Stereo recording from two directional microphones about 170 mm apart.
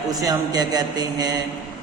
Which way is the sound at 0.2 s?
20° right (ahead or behind).